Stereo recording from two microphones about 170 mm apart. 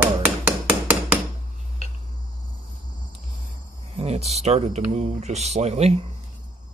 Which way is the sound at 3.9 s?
40° right (ahead or behind).